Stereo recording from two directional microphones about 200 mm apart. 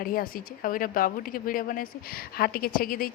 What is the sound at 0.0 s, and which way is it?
Speech, 45° left (ahead or behind).